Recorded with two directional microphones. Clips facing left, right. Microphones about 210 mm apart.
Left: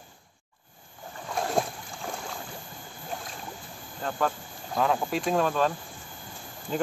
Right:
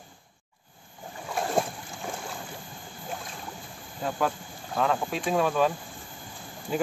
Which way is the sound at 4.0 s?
5° right (ahead or behind).